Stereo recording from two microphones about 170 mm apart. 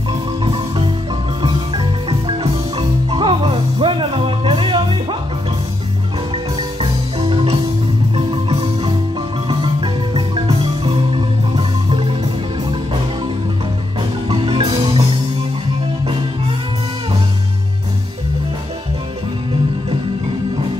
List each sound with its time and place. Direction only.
0.4 s music: 30° right (ahead or behind)
6.3 s music: 30° right (ahead or behind)
9.5 s music: 30° right (ahead or behind)
14.2 s music: 30° right (ahead or behind)